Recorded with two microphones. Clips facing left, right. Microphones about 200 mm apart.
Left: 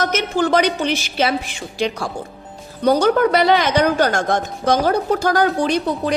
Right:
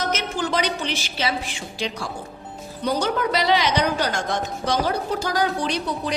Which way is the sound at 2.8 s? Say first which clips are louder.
Left 8 dB; 50° left (ahead or behind).